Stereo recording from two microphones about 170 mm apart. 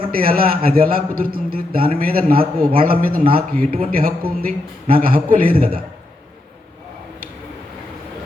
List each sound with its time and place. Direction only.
0.1 s a man's voice: 60° right (ahead or behind)